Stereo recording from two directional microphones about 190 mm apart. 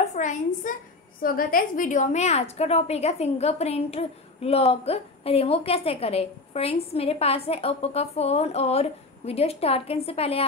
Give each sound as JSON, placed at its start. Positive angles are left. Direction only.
{"t": 0.0, "sound": "a woman's voice", "side_deg": 40}